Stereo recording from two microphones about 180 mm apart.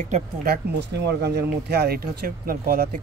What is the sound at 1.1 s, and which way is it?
Speech, 65° right (ahead or behind).